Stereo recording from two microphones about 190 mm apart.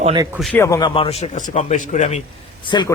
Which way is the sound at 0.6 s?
20° left (ahead or behind).